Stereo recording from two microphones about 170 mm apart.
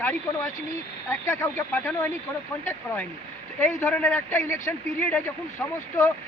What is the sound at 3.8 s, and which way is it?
Speech, 10° left (ahead or behind).